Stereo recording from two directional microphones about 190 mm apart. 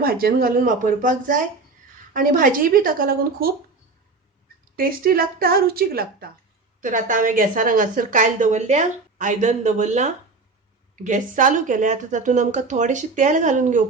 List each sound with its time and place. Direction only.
0.0 s a woman's voice: 50° right (ahead or behind)
4.8 s a woman's voice: 50° right (ahead or behind)